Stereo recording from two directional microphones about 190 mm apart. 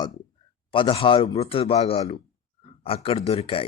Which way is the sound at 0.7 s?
25° left (ahead or behind).